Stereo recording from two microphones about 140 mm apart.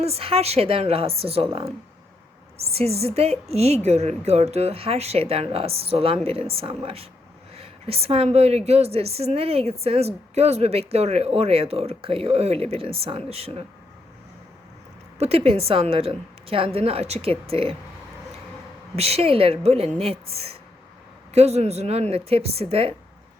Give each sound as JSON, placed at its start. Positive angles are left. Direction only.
{"t": 0.0, "sound": "a woman's voice", "side_deg": -45}
{"t": 15.2, "sound": "a woman's voice", "side_deg": -45}
{"t": 18.9, "sound": "a woman's voice", "side_deg": -45}